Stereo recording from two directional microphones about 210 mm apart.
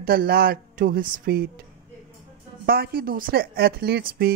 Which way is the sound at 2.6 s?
45° right (ahead or behind).